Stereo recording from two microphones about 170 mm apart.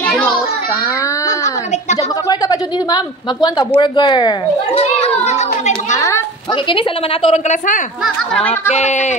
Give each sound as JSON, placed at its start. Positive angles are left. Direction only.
{"t": 0.0, "sound": "children playing", "side_deg": 10}
{"t": 2.2, "sound": "speech", "side_deg": 20}
{"t": 4.7, "sound": "children playing", "side_deg": 40}
{"t": 5.9, "sound": "a sound", "side_deg": 15}
{"t": 6.5, "sound": "a woman's voice", "side_deg": 30}
{"t": 7.3, "sound": "speech", "side_deg": 45}